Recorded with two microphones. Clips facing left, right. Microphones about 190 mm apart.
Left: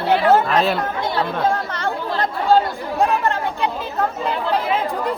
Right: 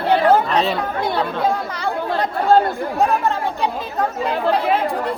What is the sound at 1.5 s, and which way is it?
Chatter, 10° right (ahead or behind).